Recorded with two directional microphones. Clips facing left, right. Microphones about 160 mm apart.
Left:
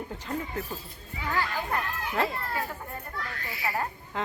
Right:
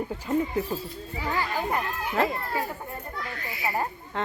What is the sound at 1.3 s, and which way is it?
Speech, 15° right (ahead or behind).